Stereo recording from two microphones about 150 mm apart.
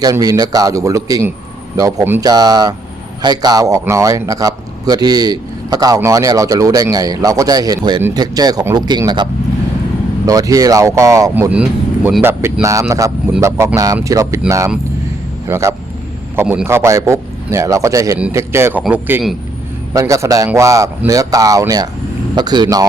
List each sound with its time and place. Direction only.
0.0 s a man's voice: 25° right (ahead or behind)
11.5 s a man's voice: 5° right (ahead or behind)
19.9 s a man's voice: 20° right (ahead or behind)